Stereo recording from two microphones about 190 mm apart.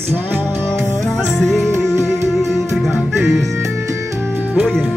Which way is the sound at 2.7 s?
Centre (ahead or behind).